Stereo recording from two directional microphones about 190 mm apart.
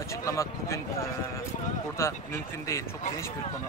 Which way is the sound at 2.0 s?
15° left (ahead or behind).